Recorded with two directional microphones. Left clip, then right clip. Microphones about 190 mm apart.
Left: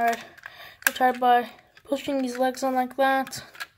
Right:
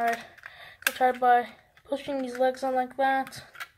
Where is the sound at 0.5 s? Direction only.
40° left (ahead or behind).